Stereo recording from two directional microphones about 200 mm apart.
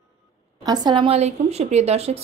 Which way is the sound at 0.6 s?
20° right (ahead or behind).